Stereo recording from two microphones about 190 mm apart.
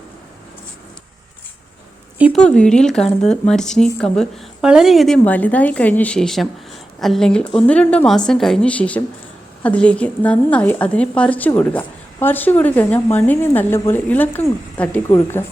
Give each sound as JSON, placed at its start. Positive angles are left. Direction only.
{"t": 2.3, "sound": "a woman's voice", "side_deg": 5}